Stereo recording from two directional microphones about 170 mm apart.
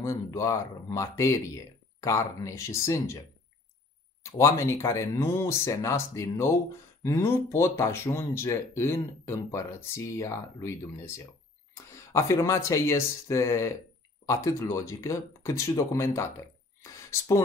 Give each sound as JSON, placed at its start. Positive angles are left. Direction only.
{"t": 0.0, "sound": "speech", "side_deg": 20}
{"t": 4.2, "sound": "speech", "side_deg": 15}